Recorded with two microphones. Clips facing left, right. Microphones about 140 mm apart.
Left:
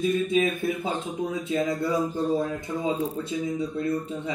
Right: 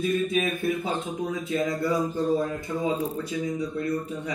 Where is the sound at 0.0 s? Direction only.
25° left (ahead or behind).